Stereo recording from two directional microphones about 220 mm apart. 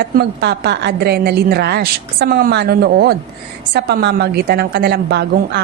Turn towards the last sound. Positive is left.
turn(degrees=-50)  # may be behind; listen again after turning